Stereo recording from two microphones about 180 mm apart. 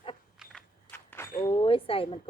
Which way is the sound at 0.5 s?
10° left (ahead or behind).